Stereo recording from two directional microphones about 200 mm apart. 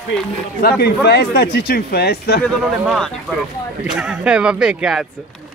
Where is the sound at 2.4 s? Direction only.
5° left (ahead or behind).